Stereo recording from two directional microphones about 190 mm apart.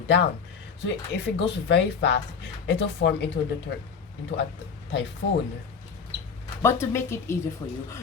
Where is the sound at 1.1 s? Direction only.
65° left (ahead or behind).